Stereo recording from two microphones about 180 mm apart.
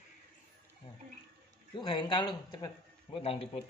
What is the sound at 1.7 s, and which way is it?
A man's voice, 25° left (ahead or behind).